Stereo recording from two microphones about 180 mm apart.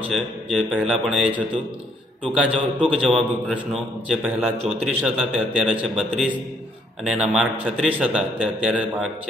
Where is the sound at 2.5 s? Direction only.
30° right (ahead or behind).